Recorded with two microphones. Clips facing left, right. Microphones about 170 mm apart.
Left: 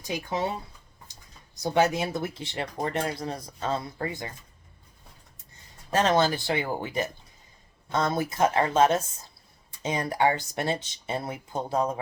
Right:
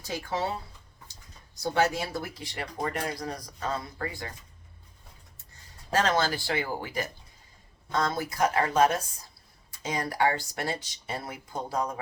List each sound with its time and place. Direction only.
0.0 s speech: 15° left (ahead or behind)
1.6 s speech: 20° left (ahead or behind)
5.9 s speech: 20° left (ahead or behind)